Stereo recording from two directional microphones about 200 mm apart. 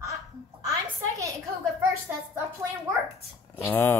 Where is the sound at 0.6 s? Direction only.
15° right (ahead or behind).